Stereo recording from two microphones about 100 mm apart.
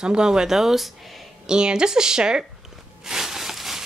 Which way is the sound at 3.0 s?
5° right (ahead or behind).